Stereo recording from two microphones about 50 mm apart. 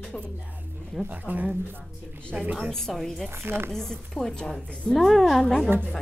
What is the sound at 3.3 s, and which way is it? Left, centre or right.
Speech, right.